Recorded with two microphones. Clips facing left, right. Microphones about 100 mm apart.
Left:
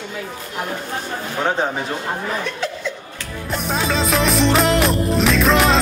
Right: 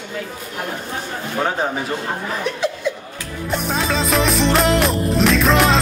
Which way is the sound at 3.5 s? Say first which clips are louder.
Even; centre (ahead or behind).